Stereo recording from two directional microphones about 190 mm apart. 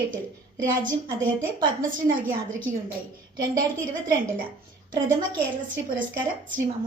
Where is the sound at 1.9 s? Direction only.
45° right (ahead or behind).